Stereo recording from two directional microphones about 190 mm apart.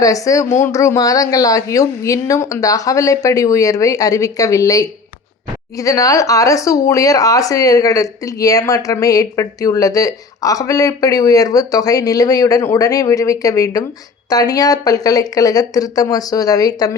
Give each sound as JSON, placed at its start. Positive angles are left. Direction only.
{"t": 0.0, "sound": "speech", "side_deg": 15}